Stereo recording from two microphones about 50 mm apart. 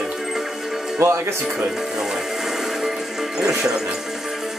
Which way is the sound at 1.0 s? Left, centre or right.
Right.